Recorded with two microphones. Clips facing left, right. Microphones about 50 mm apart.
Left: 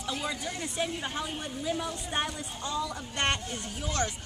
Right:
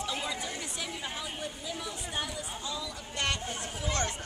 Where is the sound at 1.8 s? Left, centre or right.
Left.